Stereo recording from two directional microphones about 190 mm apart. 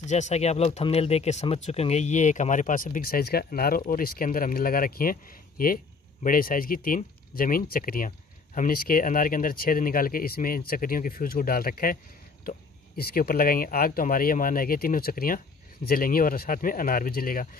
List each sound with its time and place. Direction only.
0.0 s speech: 40° left (ahead or behind)